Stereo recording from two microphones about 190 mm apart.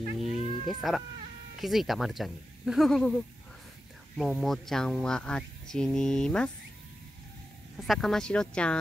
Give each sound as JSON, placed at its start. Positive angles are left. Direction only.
{"t": 0.2, "sound": "cat", "side_deg": 35}
{"t": 0.7, "sound": "speech", "side_deg": 0}
{"t": 7.7, "sound": "speech", "side_deg": 0}